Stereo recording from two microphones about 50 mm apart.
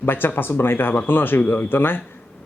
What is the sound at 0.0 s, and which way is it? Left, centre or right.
A man's voice, left.